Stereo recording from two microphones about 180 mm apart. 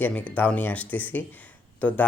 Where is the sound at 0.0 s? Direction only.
10° left (ahead or behind).